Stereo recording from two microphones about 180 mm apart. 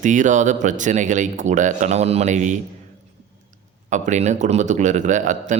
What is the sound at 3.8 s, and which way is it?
Speech, 45° right (ahead or behind).